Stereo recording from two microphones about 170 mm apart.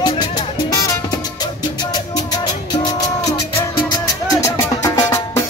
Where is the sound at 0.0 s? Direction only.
20° left (ahead or behind).